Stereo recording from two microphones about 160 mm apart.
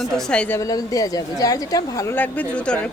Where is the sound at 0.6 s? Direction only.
20° left (ahead or behind).